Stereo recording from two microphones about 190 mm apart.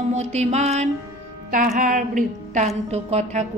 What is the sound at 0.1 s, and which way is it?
A woman's voice, 35° right (ahead or behind).